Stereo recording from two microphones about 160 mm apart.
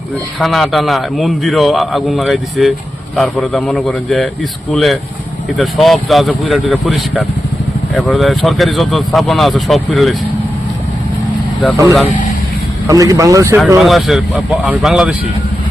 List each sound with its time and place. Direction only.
0.3 s a man's voice: centre (ahead or behind)
12.9 s speech: 20° right (ahead or behind)
13.7 s a man's voice: centre (ahead or behind)